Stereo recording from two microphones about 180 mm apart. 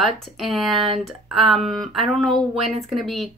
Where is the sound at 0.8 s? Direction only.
30° right (ahead or behind).